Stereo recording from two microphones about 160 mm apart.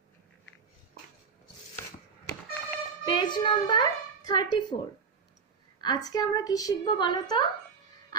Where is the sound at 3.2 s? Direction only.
30° left (ahead or behind).